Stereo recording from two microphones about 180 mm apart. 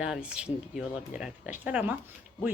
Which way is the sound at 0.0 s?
5° right (ahead or behind).